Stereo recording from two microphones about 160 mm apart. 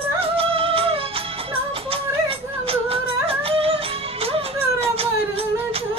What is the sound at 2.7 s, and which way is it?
Music, 35° right (ahead or behind).